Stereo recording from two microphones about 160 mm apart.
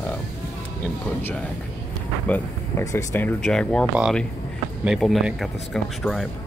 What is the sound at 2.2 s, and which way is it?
Speech, 10° left (ahead or behind).